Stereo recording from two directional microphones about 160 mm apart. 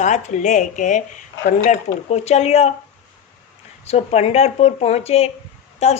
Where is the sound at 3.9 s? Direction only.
40° left (ahead or behind).